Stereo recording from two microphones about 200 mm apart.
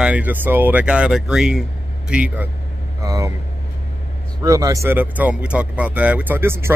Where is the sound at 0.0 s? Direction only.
5° right (ahead or behind).